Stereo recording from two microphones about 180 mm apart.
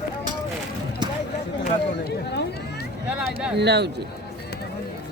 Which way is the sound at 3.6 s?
70° right (ahead or behind).